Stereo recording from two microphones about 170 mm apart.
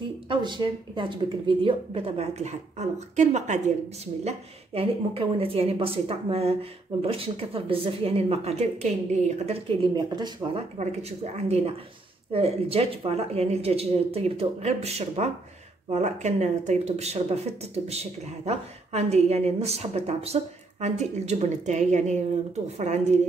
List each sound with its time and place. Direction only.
0.3 s speech: 25° right (ahead or behind)
9.5 s speech: 25° right (ahead or behind)
10.8 s a woman's voice: 40° right (ahead or behind)